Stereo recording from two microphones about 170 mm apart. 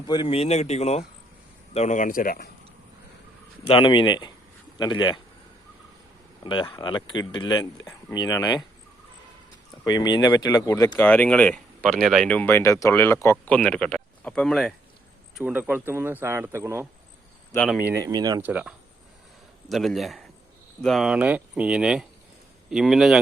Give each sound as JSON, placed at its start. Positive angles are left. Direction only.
{"t": 0.1, "sound": "speech", "side_deg": 30}
{"t": 3.7, "sound": "speech", "side_deg": 30}
{"t": 6.4, "sound": "speech", "side_deg": 30}
{"t": 9.8, "sound": "speech", "side_deg": 25}
{"t": 15.4, "sound": "a man's voice", "side_deg": -10}
{"t": 18.4, "sound": "a man's voice", "side_deg": -10}